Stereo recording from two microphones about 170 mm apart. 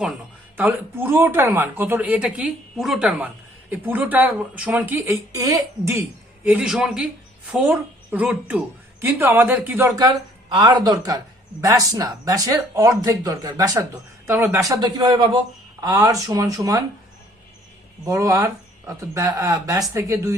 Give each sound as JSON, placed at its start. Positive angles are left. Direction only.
{"t": 0.5, "sound": "speech", "side_deg": -10}
{"t": 18.0, "sound": "speech", "side_deg": -20}